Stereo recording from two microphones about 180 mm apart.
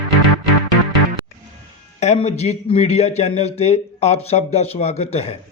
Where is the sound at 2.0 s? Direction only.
40° left (ahead or behind).